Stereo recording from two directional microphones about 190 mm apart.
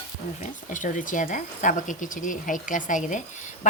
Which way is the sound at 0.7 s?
40° left (ahead or behind).